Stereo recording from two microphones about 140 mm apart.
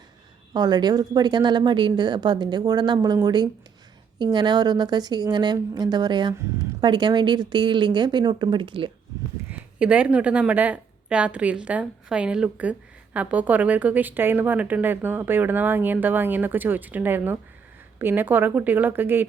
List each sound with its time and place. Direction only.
0.5 s a woman's voice: 30° right (ahead or behind)
9.5 s a woman's voice: 10° right (ahead or behind)